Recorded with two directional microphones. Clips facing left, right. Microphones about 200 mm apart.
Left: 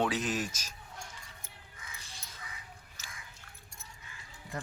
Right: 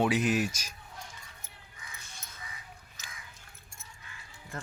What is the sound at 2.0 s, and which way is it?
Crow, 30° left (ahead or behind).